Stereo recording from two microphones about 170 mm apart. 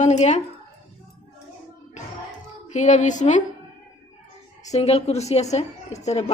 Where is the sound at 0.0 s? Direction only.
45° left (ahead or behind).